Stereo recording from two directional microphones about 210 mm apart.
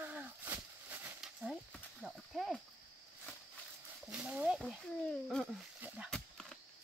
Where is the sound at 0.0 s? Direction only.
10° right (ahead or behind).